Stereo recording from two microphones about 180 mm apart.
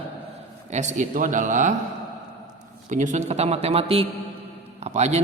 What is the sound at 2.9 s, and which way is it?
A man's voice, 45° right (ahead or behind).